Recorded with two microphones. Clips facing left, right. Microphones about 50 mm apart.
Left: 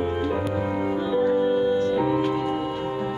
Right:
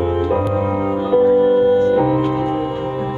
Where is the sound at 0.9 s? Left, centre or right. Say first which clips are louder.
Right 9 dB; right.